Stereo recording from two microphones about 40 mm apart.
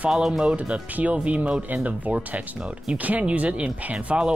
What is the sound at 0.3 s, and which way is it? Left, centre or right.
Speech, right.